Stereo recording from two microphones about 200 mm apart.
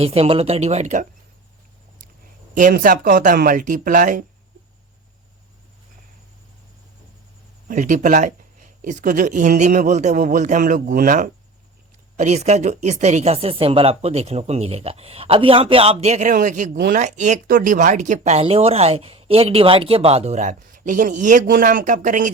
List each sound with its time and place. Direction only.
0.0 s speech: 30° right (ahead or behind)
2.6 s speech: 45° right (ahead or behind)
7.7 s speech: 40° right (ahead or behind)